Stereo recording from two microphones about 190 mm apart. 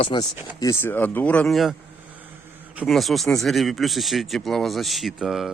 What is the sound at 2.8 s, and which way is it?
Speech, centre (ahead or behind).